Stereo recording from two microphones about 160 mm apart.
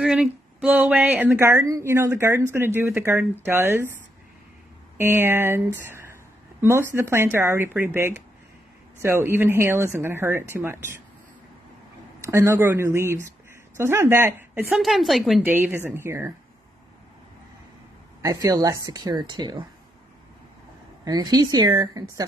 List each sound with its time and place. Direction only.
0.0 s speech: 5° right (ahead or behind)
4.9 s speech: 15° right (ahead or behind)
5.9 s a sound: 15° right (ahead or behind)
6.6 s speech: 15° right (ahead or behind)
12.3 s speech: 15° right (ahead or behind)
14.7 s a woman's voice: centre (ahead or behind)
15.5 s speech: 10° right (ahead or behind)
18.2 s speech: 20° right (ahead or behind)
21.0 s speech: 25° right (ahead or behind)